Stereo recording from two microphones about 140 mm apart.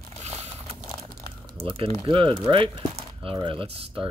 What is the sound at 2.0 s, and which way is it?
Speech, 35° right (ahead or behind).